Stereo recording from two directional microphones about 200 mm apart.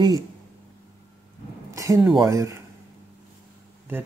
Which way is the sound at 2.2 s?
15° right (ahead or behind).